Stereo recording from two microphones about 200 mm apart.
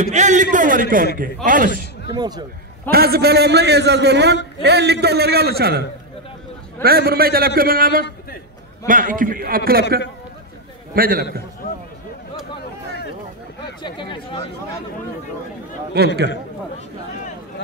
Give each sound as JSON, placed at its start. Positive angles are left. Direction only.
{"t": 0.0, "sound": "a man's voice", "side_deg": -35}
{"t": 2.0, "sound": "speech", "side_deg": -20}
{"t": 2.9, "sound": "a man's voice", "side_deg": -50}
{"t": 13.8, "sound": "speech", "side_deg": 25}